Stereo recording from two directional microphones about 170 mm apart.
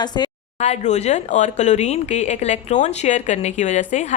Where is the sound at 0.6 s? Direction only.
40° left (ahead or behind).